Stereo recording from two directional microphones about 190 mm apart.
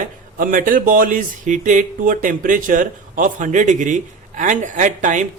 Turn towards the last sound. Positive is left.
turn(degrees=-40)  # may be behind; listen again after turning